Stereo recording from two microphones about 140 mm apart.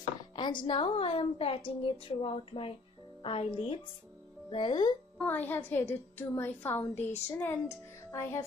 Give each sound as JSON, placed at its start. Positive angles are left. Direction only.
{"t": 0.4, "sound": "a woman's voice", "side_deg": 35}
{"t": 5.2, "sound": "a woman's voice", "side_deg": 10}
{"t": 8.1, "sound": "music", "side_deg": 20}